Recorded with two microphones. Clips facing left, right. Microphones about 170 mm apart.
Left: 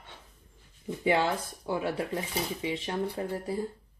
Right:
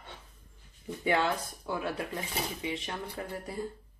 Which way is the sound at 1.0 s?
25° left (ahead or behind).